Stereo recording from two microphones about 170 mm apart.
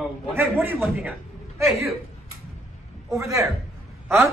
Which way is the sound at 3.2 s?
20° right (ahead or behind).